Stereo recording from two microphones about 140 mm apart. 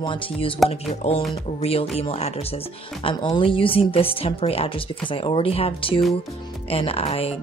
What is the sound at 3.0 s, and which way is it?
A woman's voice, 35° left (ahead or behind).